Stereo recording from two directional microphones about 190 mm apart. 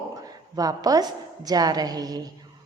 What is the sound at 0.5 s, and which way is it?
A woman's voice, 20° right (ahead or behind).